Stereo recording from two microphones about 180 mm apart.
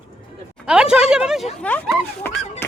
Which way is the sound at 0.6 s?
5° right (ahead or behind).